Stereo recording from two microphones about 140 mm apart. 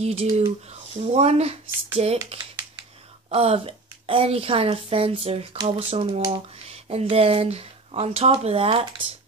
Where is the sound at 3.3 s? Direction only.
45° right (ahead or behind).